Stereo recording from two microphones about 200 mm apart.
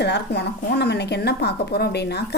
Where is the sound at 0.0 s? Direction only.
55° left (ahead or behind).